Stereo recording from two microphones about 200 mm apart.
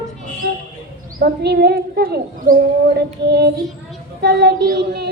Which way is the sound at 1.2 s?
55° right (ahead or behind).